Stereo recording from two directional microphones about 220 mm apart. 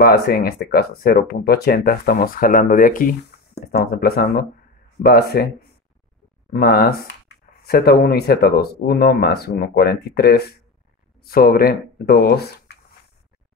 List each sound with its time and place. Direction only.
0.0 s speech: 45° left (ahead or behind)
6.5 s speech: 45° left (ahead or behind)